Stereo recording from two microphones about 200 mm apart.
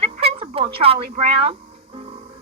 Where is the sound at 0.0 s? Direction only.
30° right (ahead or behind).